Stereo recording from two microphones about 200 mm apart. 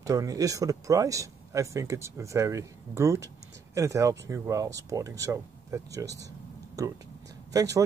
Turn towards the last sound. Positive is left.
turn(degrees=-15)  # may be behind; listen again after turning